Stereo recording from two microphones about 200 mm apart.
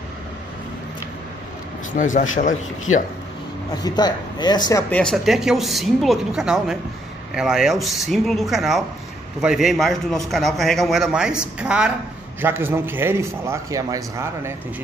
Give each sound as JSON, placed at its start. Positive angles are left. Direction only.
{"t": 1.9, "sound": "speech", "side_deg": 40}
{"t": 3.8, "sound": "a man's voice", "side_deg": 20}
{"t": 4.9, "sound": "a man's voice", "side_deg": 0}